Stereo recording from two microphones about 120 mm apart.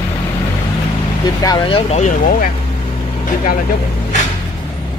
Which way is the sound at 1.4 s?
35° left (ahead or behind).